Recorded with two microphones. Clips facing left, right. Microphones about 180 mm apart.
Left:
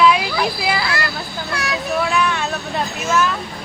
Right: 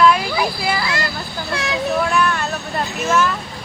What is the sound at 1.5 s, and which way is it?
Speech, 25° right (ahead or behind).